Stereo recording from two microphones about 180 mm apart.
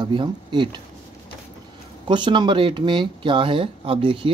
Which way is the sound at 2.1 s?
25° right (ahead or behind).